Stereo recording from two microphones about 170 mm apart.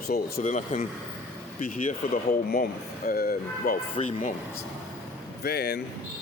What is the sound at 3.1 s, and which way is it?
Speech, 60° left (ahead or behind).